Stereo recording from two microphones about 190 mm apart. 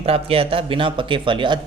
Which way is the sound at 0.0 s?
30° right (ahead or behind).